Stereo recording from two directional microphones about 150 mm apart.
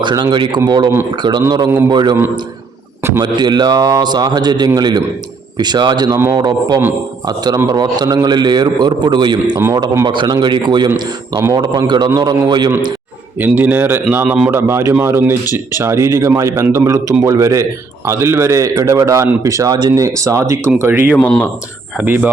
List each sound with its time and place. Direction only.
0.0 s a man's voice: 30° right (ahead or behind)
3.2 s a man's voice: 30° right (ahead or behind)
13.4 s a man's voice: 10° right (ahead or behind)
21.2 s a man's voice: 10° left (ahead or behind)
21.9 s a man's voice: 10° right (ahead or behind)